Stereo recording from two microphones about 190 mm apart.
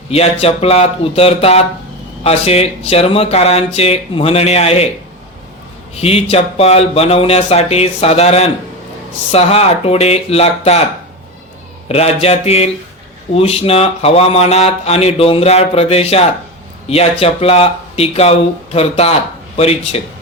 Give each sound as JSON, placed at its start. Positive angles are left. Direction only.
{"t": 0.1, "sound": "speech", "side_deg": 30}
{"t": 6.0, "sound": "speech", "side_deg": 30}
{"t": 11.9, "sound": "speech", "side_deg": 30}